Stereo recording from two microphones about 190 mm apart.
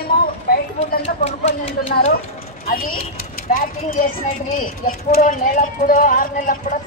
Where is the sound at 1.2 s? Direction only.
35° left (ahead or behind).